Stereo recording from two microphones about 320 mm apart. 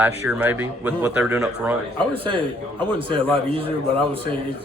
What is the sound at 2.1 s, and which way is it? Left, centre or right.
Speech, centre.